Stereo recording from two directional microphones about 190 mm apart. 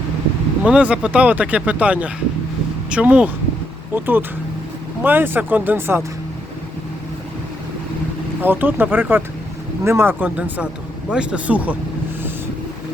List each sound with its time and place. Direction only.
0.6 s speech: 5° right (ahead or behind)
8.4 s speech: 10° right (ahead or behind)